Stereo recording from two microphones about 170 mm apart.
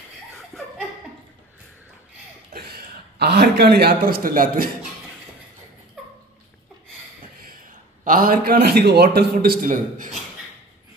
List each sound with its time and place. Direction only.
2.5 s a man's voice: 65° right (ahead or behind)
6.0 s a sound: centre (ahead or behind)
8.0 s a man's voice: 55° right (ahead or behind)